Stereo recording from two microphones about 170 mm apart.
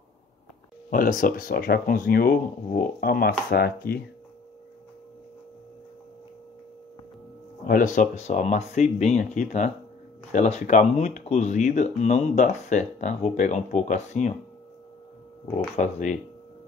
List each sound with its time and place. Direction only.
0.8 s speech: 55° left (ahead or behind)
7.6 s speech: 50° left (ahead or behind)
15.5 s speech: 40° left (ahead or behind)